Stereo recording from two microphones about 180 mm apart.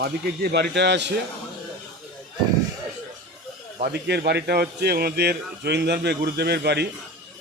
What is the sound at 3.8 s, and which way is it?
A man's voice, 65° right (ahead or behind).